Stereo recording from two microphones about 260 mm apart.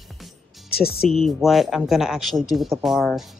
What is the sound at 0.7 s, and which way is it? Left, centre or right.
Speech, left.